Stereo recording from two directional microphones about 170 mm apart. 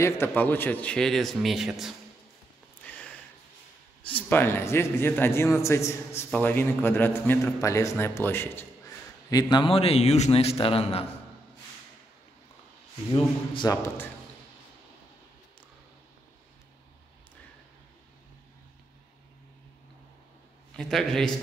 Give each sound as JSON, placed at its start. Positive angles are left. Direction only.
{"t": 0.0, "sound": "a man's voice", "side_deg": 10}
{"t": 2.8, "sound": "a sound", "side_deg": 10}
{"t": 4.0, "sound": "a man's voice", "side_deg": 10}
{"t": 13.1, "sound": "a man's voice", "side_deg": 25}
{"t": 20.7, "sound": "a man's voice", "side_deg": 5}